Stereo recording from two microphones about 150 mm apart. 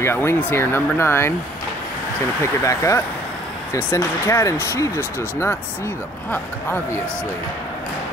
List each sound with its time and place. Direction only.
0.0 s speech: 15° left (ahead or behind)
2.6 s speech: 20° left (ahead or behind)